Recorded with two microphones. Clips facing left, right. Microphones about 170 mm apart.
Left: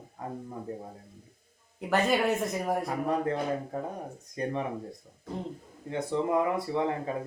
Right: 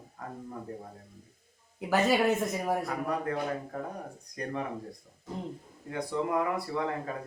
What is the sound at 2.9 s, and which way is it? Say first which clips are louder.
Speech: left 3 dB; 25° left (ahead or behind).